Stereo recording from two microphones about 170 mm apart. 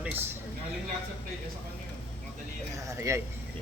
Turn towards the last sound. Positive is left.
turn(degrees=-15)  # may be behind; listen again after turning